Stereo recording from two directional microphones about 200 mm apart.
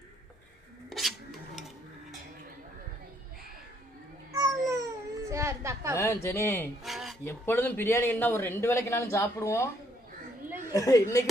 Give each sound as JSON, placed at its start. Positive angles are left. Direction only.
{"t": 0.9, "sound": "filing", "side_deg": 0}
{"t": 4.3, "sound": "babbling", "side_deg": -15}
{"t": 5.3, "sound": "a sound", "side_deg": -15}
{"t": 6.0, "sound": "a man's voice", "side_deg": 15}
{"t": 6.8, "sound": "a sound", "side_deg": 0}
{"t": 7.3, "sound": "a man's voice", "side_deg": 10}
{"t": 10.7, "sound": "a man's voice", "side_deg": 15}